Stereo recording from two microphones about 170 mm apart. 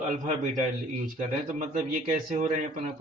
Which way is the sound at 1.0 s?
50° right (ahead or behind).